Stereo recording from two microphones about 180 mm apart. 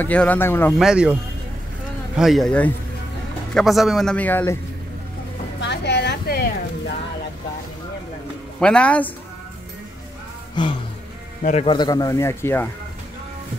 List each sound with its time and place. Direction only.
0.0 s speech: 10° left (ahead or behind)
0.7 s speech: 5° right (ahead or behind)
2.1 s speech: centre (ahead or behind)
5.6 s a sound: 70° left (ahead or behind)
8.5 s speech: 5° left (ahead or behind)
10.5 s speech: 25° left (ahead or behind)